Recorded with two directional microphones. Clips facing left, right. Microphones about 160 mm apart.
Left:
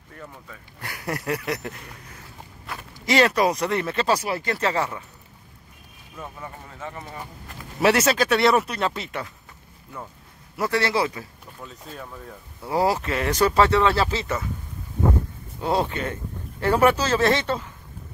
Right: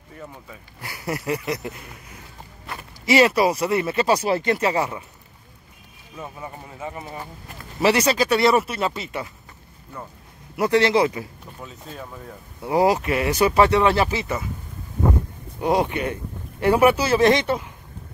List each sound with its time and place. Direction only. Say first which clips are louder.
0.1 s speech: right 2 dB; 10° right (ahead or behind)
4.2 s a man's voice: right 5 dB; 25° right (ahead or behind)
6.1 s a man's voice: right 2 dB; 10° right (ahead or behind)
7.8 s speech: right 1 dB; centre (ahead or behind)
10.5 s speech: right 5 dB; 20° right (ahead or behind)
11.6 s speech: right 1 dB; centre (ahead or behind)
12.6 s a man's voice: right 4 dB; 15° right (ahead or behind)
15.6 s a man's voice: right 3 dB; 15° right (ahead or behind)